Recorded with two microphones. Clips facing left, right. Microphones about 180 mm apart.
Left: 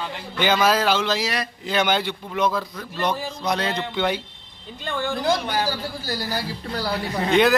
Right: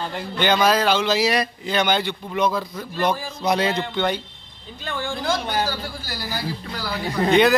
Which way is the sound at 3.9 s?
5° left (ahead or behind).